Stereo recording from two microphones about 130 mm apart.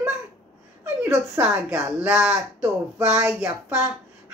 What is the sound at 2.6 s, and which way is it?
Speech, 20° right (ahead or behind).